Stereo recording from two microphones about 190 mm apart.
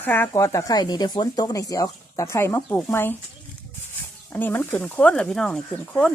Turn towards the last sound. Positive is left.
turn(degrees=5)  # may be behind; listen again after turning